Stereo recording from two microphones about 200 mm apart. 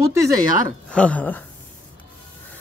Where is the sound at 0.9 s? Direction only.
5° left (ahead or behind).